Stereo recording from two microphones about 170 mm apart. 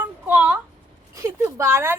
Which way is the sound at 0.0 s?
10° right (ahead or behind).